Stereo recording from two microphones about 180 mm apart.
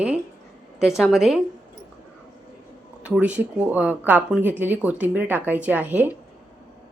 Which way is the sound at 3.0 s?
5° right (ahead or behind).